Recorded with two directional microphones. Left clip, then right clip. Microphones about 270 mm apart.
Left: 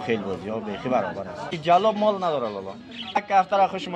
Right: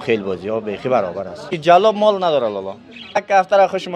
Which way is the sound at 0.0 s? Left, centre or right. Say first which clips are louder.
Right 7 dB; right.